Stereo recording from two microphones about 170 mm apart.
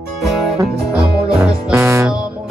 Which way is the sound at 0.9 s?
5° right (ahead or behind).